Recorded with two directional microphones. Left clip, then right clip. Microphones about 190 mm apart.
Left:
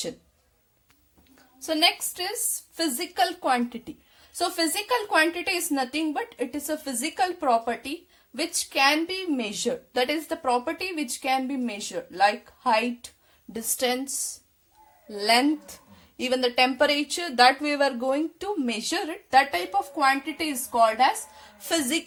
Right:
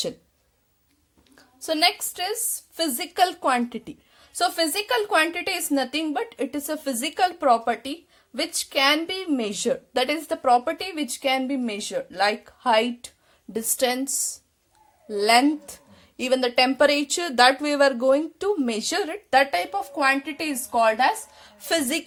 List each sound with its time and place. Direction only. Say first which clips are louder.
1.4 s a woman's voice: right 1 dB; 35° right (ahead or behind)